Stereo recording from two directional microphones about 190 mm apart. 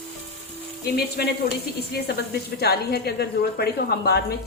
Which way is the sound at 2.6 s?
55° left (ahead or behind).